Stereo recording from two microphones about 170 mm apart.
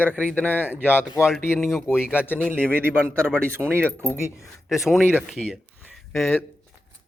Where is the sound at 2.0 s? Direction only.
10° left (ahead or behind).